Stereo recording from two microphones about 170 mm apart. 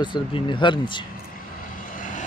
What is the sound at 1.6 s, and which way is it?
Vehicle, 50° left (ahead or behind).